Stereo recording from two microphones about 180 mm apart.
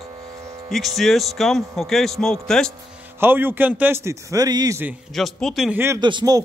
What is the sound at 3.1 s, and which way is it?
A man's voice, 10° right (ahead or behind).